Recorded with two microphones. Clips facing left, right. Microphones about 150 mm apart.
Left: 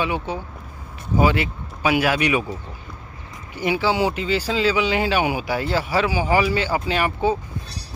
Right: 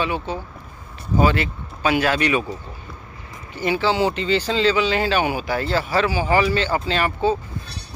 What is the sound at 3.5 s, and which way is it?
Speech, 10° left (ahead or behind).